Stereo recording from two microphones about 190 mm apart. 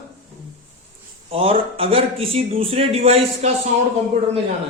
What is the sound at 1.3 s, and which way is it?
A man's voice, 30° right (ahead or behind).